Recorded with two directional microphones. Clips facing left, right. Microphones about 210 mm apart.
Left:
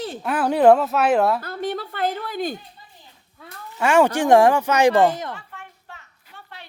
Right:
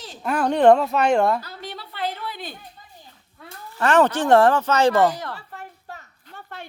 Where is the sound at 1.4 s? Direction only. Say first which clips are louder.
Left 10 dB; 50° left (ahead or behind).